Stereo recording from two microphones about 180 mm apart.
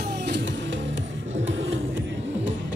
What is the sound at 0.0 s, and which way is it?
Music, 70° right (ahead or behind).